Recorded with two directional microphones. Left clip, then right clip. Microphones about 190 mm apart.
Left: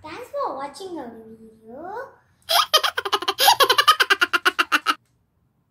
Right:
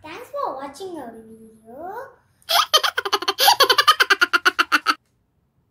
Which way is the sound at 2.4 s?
Centre (ahead or behind).